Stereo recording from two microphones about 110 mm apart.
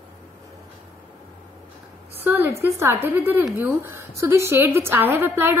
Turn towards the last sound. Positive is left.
turn(degrees=-20)  # may be behind; listen again after turning